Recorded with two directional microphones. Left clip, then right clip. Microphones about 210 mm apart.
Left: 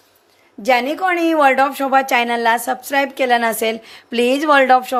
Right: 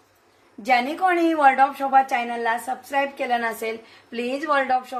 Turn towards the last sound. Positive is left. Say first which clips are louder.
# left 9 dB
turn(degrees=55)  # may be behind; listen again after turning